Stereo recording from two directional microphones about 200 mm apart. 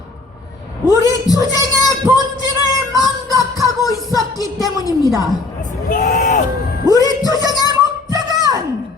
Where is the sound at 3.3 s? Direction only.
15° right (ahead or behind).